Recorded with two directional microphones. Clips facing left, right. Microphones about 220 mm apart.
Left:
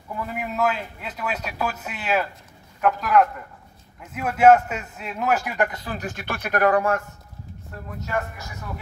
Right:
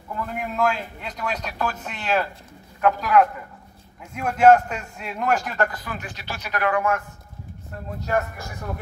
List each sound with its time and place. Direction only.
0.1 s a man's voice: 5° left (ahead or behind)
5.7 s speech: 30° left (ahead or behind)
6.0 s speech: 55° left (ahead or behind); by 7.0 s 35° left (ahead or behind)